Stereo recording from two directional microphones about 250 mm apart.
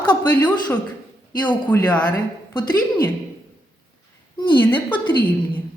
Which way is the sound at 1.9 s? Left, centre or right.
Centre.